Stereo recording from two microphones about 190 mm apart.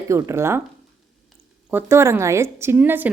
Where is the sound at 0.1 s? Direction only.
15° right (ahead or behind).